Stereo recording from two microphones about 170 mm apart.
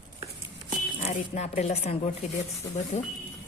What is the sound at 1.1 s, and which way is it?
Speech, 45° left (ahead or behind).